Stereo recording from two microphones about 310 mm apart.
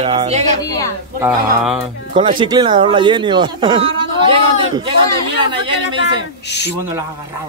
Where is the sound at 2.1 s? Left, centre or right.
Centre.